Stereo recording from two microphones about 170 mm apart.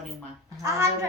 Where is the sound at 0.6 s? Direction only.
20° right (ahead or behind).